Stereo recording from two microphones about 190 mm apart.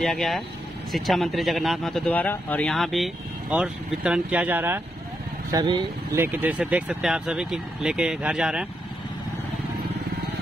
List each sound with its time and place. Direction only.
0.0 s speech: centre (ahead or behind)
5.5 s speech: 20° right (ahead or behind)
6.2 s speech: 10° right (ahead or behind)